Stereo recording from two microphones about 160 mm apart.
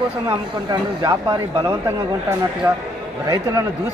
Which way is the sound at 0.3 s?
25° right (ahead or behind).